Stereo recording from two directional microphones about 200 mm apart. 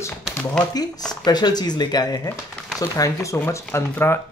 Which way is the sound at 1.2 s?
20° left (ahead or behind).